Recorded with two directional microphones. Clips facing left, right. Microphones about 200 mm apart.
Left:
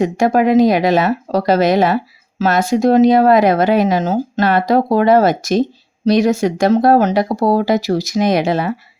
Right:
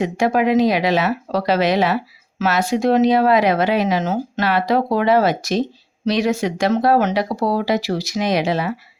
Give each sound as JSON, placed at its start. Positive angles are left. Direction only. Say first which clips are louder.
{"t": 0.0, "sound": "speech", "louder": "left 4 dB", "side_deg": 45}